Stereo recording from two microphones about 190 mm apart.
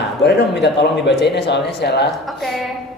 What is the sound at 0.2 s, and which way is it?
Speech, 65° left (ahead or behind).